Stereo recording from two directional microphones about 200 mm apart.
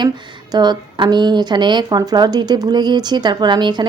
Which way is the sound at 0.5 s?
20° right (ahead or behind).